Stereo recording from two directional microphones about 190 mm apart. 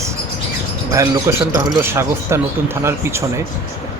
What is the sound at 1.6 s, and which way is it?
Speech, 15° right (ahead or behind).